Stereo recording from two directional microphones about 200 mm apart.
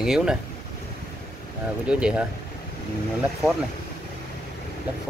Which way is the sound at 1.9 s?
5° right (ahead or behind).